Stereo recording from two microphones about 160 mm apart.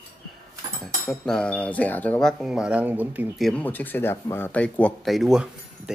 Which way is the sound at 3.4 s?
5° left (ahead or behind).